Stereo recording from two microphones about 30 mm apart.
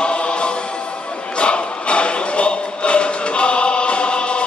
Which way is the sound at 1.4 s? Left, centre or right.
Left.